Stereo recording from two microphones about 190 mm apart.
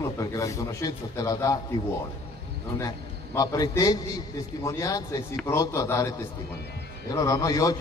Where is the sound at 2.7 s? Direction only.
15° left (ahead or behind).